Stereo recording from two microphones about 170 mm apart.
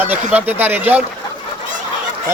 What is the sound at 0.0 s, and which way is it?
Speech, 10° right (ahead or behind).